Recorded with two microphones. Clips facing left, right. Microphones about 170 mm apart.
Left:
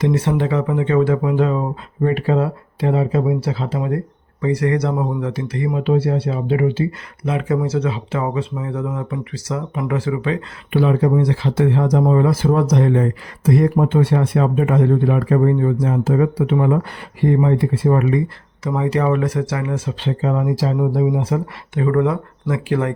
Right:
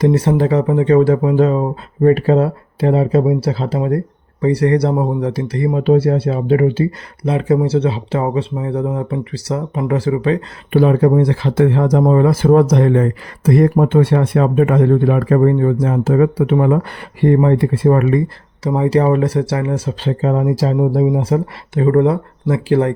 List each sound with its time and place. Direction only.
0.0 s speech: 40° right (ahead or behind); by 18.2 s 55° right (ahead or behind)
18.6 s speech: 35° right (ahead or behind)